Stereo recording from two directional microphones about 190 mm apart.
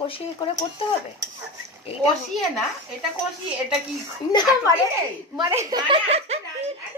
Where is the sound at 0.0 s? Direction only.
25° left (ahead or behind).